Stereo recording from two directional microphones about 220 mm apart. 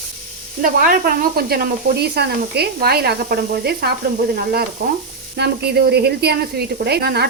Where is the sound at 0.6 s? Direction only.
40° right (ahead or behind).